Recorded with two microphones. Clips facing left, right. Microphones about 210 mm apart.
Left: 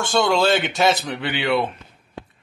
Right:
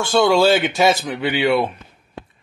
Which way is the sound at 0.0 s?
5° right (ahead or behind).